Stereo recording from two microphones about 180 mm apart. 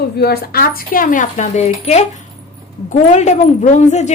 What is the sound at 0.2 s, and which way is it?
Speech, 60° left (ahead or behind).